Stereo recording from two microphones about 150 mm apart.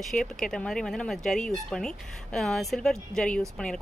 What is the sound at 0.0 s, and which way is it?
Speech, 5° left (ahead or behind).